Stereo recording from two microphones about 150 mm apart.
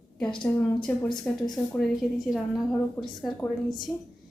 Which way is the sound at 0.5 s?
10° left (ahead or behind).